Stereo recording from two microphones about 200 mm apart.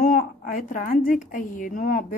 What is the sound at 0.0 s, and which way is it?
A woman's voice, 45° left (ahead or behind).